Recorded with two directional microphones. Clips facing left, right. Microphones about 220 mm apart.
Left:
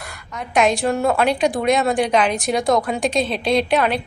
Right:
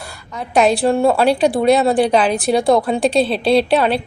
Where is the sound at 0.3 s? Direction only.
35° right (ahead or behind).